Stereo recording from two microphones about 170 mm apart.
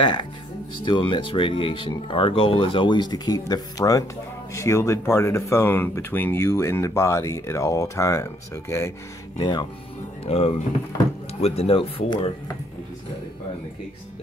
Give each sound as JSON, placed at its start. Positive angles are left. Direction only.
{"t": 0.0, "sound": "speech", "side_deg": 25}
{"t": 10.2, "sound": "speech", "side_deg": 35}